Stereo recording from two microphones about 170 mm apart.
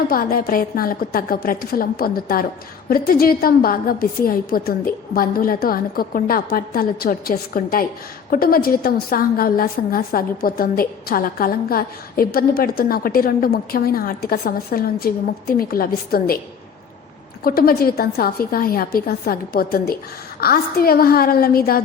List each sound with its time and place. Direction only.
0.1 s a woman's voice: 60° left (ahead or behind)
17.4 s a woman's voice: 60° left (ahead or behind)